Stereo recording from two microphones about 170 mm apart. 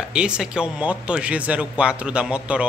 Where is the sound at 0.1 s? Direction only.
5° right (ahead or behind).